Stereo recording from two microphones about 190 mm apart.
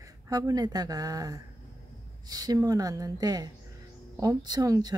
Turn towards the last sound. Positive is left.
turn(degrees=-20)  # may be behind; listen again after turning